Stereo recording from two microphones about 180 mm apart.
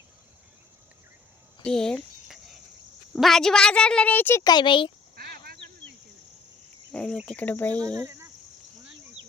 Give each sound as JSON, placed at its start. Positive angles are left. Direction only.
{"t": 1.6, "sound": "a sound", "side_deg": 5}
{"t": 3.1, "sound": "a woman's voice", "side_deg": 0}
{"t": 5.1, "sound": "a sound", "side_deg": -55}
{"t": 6.9, "sound": "a woman's voice", "side_deg": 5}
{"t": 7.2, "sound": "cricket", "side_deg": 5}
{"t": 7.8, "sound": "speech", "side_deg": -20}